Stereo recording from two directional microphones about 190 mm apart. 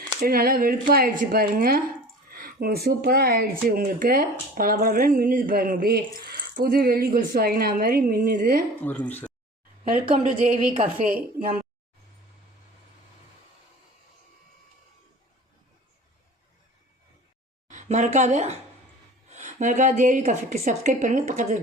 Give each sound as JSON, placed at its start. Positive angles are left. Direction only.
{"t": 0.2, "sound": "speech", "side_deg": -50}
{"t": 8.8, "sound": "speech", "side_deg": 10}
{"t": 9.9, "sound": "speech", "side_deg": -45}
{"t": 17.7, "sound": "a woman's voice", "side_deg": -40}